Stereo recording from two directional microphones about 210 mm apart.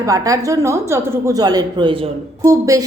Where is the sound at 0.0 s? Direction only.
15° right (ahead or behind).